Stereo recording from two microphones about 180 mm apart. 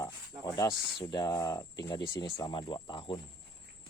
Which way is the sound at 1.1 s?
20° left (ahead or behind).